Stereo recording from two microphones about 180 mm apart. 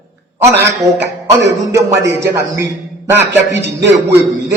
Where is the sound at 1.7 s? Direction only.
15° right (ahead or behind).